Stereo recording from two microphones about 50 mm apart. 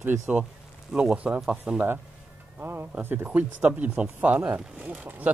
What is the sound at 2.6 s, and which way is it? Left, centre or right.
Speech, right.